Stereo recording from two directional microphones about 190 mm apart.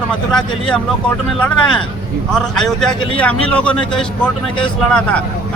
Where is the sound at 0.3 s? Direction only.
5° left (ahead or behind).